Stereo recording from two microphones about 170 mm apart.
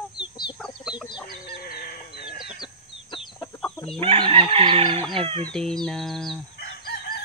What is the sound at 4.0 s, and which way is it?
Speech, 30° right (ahead or behind).